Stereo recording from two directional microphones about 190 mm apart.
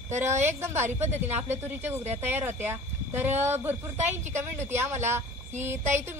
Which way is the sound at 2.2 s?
10° right (ahead or behind).